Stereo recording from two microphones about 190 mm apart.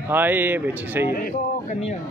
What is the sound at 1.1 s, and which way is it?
Speech, 50° left (ahead or behind).